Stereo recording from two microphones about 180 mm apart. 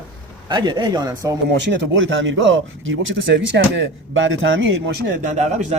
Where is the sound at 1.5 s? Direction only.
80° right.